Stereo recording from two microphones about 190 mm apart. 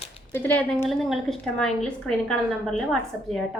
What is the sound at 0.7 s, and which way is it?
A woman's voice, centre (ahead or behind).